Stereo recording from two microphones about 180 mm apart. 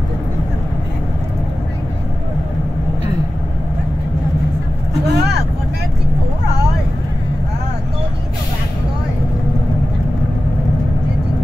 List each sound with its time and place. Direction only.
5.0 s vehicle: 65° right (ahead or behind)